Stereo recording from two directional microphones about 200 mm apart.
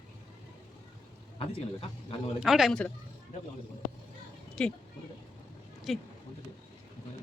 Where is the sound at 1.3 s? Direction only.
30° left (ahead or behind).